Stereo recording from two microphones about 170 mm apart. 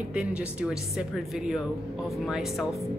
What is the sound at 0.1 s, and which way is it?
Speech, 5° right (ahead or behind).